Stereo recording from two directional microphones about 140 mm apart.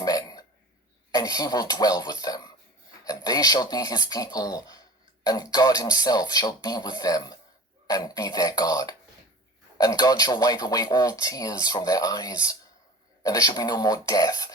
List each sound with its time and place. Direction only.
0.0 s burping: 25° left (ahead or behind)
1.1 s speech: 25° left (ahead or behind)